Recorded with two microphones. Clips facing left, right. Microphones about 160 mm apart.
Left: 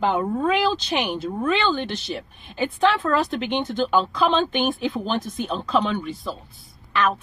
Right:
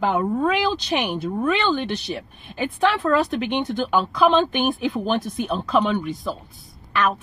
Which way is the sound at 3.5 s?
15° right (ahead or behind).